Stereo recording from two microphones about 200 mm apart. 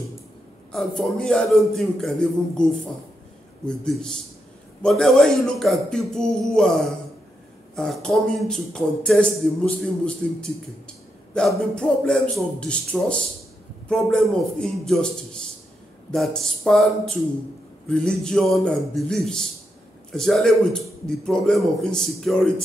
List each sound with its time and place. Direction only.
0.7 s a man's voice: 5° left (ahead or behind)